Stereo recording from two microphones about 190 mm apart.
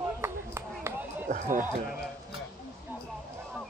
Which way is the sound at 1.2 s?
45° right (ahead or behind).